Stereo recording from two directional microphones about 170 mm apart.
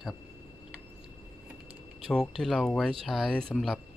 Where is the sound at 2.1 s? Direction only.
5° left (ahead or behind).